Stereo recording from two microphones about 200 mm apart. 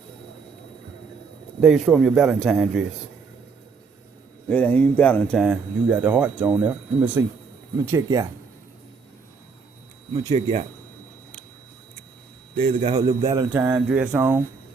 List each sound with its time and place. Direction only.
1.6 s a man's voice: centre (ahead or behind)
4.4 s speech: 5° left (ahead or behind)
5.4 s speech: 5° right (ahead or behind)
10.2 s a man's voice: 30° right (ahead or behind)
12.5 s a man's voice: 30° right (ahead or behind)
13.2 s speech: 15° right (ahead or behind)